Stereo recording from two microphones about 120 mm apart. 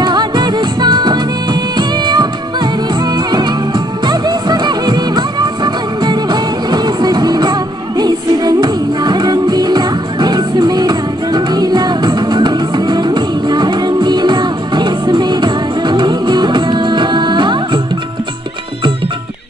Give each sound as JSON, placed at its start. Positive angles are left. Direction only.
{"t": 0.0, "sound": "music", "side_deg": -40}
{"t": 4.0, "sound": "music", "side_deg": -35}